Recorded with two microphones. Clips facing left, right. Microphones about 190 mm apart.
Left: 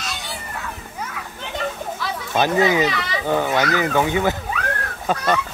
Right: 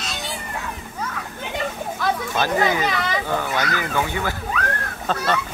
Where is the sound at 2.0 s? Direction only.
50° right (ahead or behind).